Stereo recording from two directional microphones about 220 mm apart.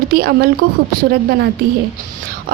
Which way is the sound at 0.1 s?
40° right (ahead or behind).